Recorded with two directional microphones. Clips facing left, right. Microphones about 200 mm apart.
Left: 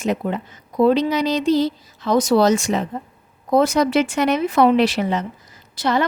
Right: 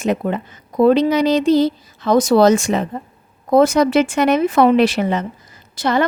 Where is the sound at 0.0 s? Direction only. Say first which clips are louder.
Right 3 dB; 55° right (ahead or behind).